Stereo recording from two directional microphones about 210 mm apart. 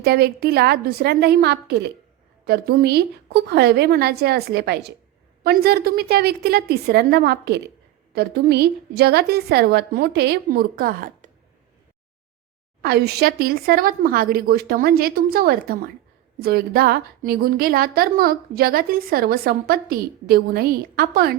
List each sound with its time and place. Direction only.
0.0 s a woman's voice: 50° right (ahead or behind)
12.8 s a woman's voice: 45° right (ahead or behind)